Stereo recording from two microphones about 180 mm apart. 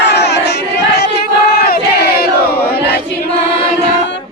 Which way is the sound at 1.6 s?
55° left (ahead or behind).